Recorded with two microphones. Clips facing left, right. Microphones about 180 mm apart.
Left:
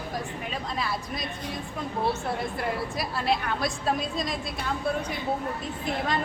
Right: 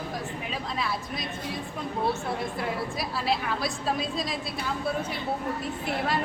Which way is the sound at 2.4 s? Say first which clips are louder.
Left 1 dB; centre (ahead or behind).